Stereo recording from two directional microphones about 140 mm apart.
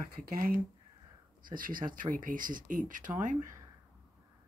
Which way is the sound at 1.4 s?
85° right.